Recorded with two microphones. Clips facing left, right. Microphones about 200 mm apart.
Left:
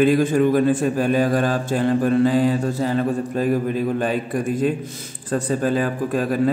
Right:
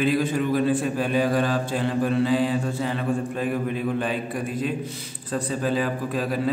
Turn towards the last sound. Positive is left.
turn(degrees=50)  # may be behind; listen again after turning